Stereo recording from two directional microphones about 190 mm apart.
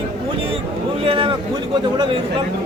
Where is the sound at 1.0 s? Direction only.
25° right (ahead or behind).